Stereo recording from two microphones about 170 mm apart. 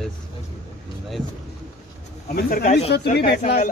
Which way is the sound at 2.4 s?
60° left (ahead or behind).